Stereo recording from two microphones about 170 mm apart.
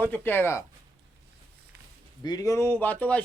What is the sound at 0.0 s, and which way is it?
Speech, 10° left (ahead or behind).